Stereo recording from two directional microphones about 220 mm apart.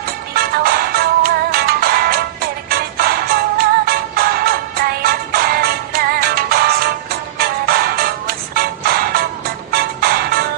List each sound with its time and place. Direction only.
0.3 s music: 45° right (ahead or behind)